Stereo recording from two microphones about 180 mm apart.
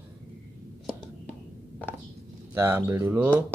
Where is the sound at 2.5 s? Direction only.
15° right (ahead or behind).